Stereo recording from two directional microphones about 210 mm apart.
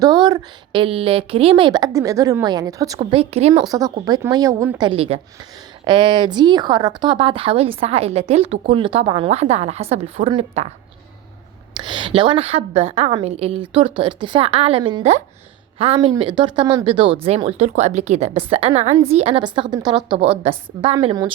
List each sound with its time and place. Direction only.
0.0 s speech: 20° right (ahead or behind)
3.0 s a woman's voice: 30° right (ahead or behind); by 4.8 s 10° right (ahead or behind)
4.8 s speech: 25° right (ahead or behind)
11.8 s speech: 25° right (ahead or behind)